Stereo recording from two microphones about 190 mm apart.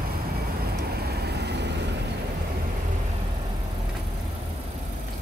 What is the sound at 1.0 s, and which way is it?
Vehicle, 55° right (ahead or behind).